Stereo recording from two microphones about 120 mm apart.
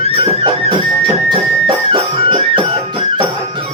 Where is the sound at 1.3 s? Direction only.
40° right (ahead or behind).